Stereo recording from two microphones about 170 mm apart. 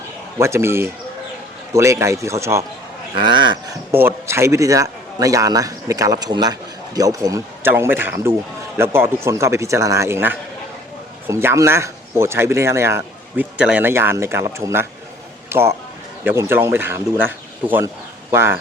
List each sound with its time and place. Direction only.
0.3 s speech: 15° right (ahead or behind)
3.2 s a man's voice: 25° right (ahead or behind)
3.9 s a man's voice: 15° right (ahead or behind)